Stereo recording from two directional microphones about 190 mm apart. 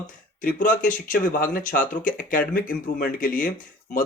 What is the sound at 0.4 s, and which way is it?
Speech, 45° left (ahead or behind).